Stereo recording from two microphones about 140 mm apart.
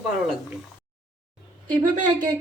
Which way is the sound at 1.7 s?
30° right (ahead or behind).